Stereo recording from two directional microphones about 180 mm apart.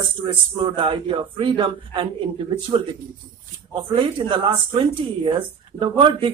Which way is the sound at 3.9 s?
30° right (ahead or behind).